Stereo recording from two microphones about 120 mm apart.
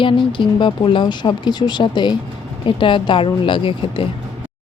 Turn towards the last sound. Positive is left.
turn(degrees=45)  # may be behind; listen again after turning